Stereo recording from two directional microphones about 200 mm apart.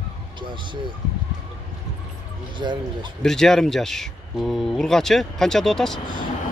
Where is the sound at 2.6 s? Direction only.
20° right (ahead or behind).